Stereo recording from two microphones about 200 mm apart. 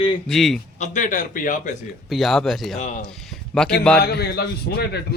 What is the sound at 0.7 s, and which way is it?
Speech, 40° left (ahead or behind).